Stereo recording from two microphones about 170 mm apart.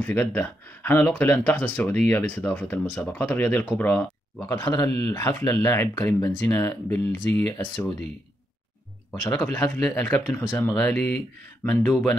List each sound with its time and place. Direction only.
0.0 s speech: 10° left (ahead or behind)
9.1 s speech: 20° left (ahead or behind)
9.5 s speech: 10° left (ahead or behind)